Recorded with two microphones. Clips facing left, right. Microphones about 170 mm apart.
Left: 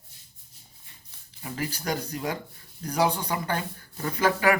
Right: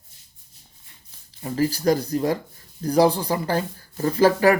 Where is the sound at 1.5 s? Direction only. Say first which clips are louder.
Right 10 dB; 35° right (ahead or behind).